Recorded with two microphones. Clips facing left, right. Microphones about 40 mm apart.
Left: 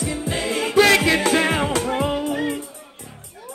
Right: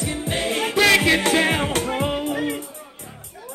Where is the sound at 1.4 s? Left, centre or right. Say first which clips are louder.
Even; right.